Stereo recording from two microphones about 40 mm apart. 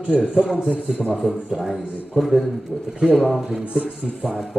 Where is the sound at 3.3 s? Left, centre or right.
Centre.